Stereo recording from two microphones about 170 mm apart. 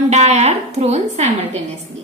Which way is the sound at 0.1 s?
40° right (ahead or behind).